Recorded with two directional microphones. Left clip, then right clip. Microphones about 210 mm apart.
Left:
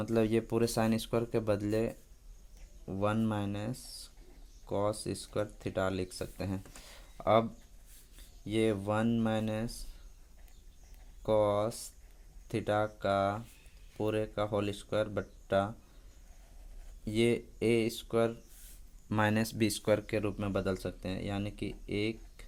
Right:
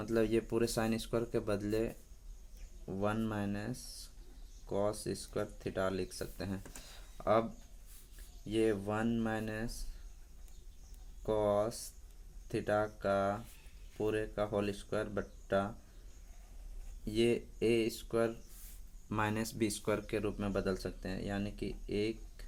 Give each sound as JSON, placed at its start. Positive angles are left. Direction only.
{"t": 0.0, "sound": "speech", "side_deg": 40}
{"t": 8.4, "sound": "speech", "side_deg": 40}
{"t": 11.2, "sound": "speech", "side_deg": 40}
{"t": 17.1, "sound": "speech", "side_deg": 40}